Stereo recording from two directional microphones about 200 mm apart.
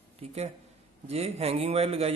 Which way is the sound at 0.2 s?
30° right (ahead or behind).